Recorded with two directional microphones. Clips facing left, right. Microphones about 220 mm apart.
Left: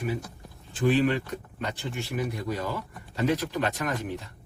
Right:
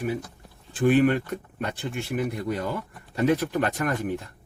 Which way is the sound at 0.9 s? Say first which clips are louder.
Right 4 dB; 55° right (ahead or behind).